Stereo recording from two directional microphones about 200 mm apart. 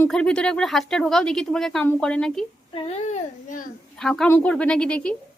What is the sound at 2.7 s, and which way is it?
A child's voice, 30° left (ahead or behind).